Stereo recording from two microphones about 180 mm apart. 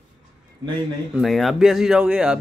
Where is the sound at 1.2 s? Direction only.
Centre (ahead or behind).